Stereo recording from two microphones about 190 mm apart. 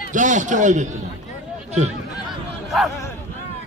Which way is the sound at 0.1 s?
40° right (ahead or behind).